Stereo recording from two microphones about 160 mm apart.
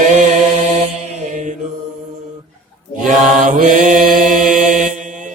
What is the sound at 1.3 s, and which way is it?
Mantra, 50° right (ahead or behind).